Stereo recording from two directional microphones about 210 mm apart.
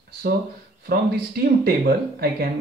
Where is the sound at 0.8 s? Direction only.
45° right (ahead or behind).